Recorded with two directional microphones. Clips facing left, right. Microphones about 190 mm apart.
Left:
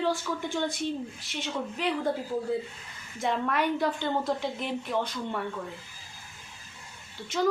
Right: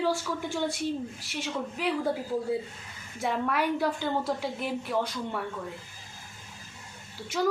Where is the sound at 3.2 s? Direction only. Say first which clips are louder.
Even; 5° right (ahead or behind).